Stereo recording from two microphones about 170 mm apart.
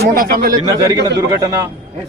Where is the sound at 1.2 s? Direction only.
20° right (ahead or behind).